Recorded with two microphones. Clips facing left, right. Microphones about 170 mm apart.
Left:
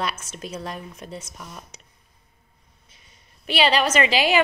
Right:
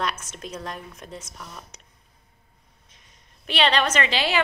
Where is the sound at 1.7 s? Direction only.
Centre (ahead or behind).